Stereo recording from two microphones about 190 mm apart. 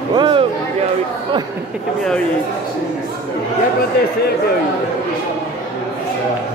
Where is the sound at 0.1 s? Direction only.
25° right (ahead or behind).